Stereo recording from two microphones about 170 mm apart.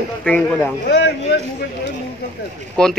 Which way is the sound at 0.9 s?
75° left (ahead or behind).